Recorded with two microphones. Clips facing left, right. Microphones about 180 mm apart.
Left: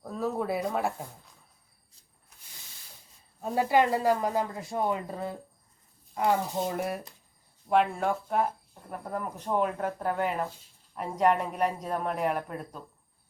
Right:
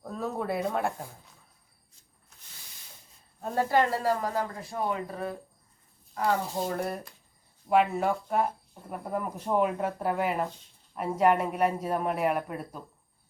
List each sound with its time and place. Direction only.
0.0 s speech: centre (ahead or behind)
3.4 s speech: 10° left (ahead or behind)
6.5 s speech: 5° left (ahead or behind)
7.7 s speech: 5° right (ahead or behind)